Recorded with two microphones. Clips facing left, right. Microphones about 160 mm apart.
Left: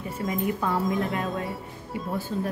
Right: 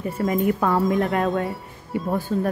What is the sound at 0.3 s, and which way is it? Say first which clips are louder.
A woman's voice: right 5 dB; 60° right (ahead or behind).